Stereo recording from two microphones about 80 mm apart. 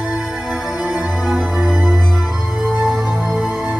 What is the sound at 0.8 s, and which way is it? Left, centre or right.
Organ, centre.